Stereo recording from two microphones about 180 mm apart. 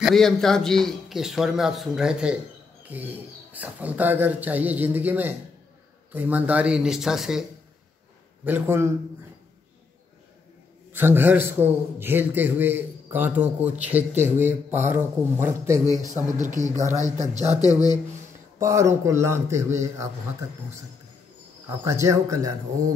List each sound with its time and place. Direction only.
0.0 s a man's voice: centre (ahead or behind)
8.5 s a man's voice: 10° right (ahead or behind)
10.9 s a man's voice: 10° right (ahead or behind)
16.1 s speech: 45° right (ahead or behind)
17.6 s speech: 20° left (ahead or behind)
18.6 s a man's voice: 15° right (ahead or behind)
21.6 s a man's voice: 15° right (ahead or behind)